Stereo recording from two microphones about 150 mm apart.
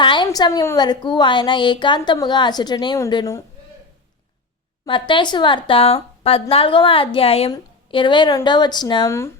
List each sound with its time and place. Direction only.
0.0 s a sound: 30° left (ahead or behind)
0.3 s a woman's voice: 25° left (ahead or behind)
4.9 s a woman's voice: 35° left (ahead or behind)